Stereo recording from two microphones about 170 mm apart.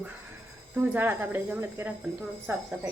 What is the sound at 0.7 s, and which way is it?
Speech, 10° right (ahead or behind).